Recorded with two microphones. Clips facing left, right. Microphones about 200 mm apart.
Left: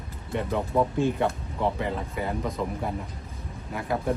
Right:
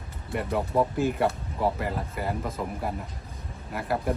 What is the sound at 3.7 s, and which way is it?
Speech, centre (ahead or behind).